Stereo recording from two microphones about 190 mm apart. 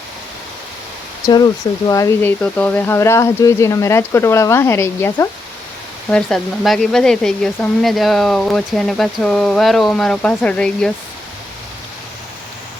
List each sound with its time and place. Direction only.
1.9 s speech: 15° left (ahead or behind)
6.1 s speech: 5° left (ahead or behind)